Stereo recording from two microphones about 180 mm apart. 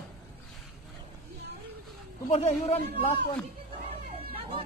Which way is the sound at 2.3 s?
40° left (ahead or behind).